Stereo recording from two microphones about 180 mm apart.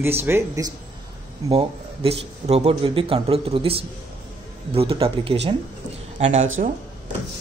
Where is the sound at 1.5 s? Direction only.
30° right (ahead or behind).